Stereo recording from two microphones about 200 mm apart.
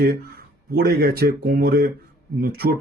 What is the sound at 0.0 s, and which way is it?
Speech, 50° right (ahead or behind).